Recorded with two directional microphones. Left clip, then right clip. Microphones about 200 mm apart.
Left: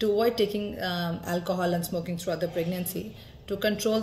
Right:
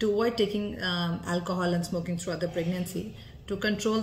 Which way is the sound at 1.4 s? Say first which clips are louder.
Left 4 dB; 10° right (ahead or behind).